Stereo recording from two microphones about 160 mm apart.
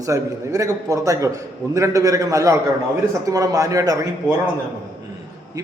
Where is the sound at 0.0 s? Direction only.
20° right (ahead or behind).